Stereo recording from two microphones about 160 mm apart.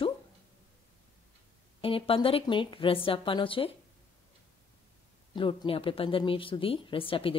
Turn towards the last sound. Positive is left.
turn(degrees=35)  # may be behind; listen again after turning